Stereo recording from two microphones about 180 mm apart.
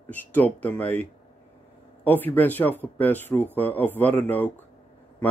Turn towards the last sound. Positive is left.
turn(degrees=10)  # may be behind; listen again after turning